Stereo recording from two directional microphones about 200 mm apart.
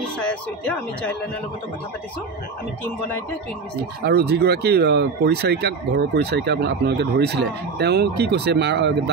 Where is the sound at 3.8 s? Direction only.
50° right (ahead or behind).